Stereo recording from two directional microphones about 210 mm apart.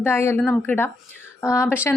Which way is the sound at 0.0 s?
10° left (ahead or behind).